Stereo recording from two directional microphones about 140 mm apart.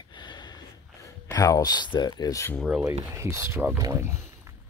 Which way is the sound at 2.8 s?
20° right (ahead or behind).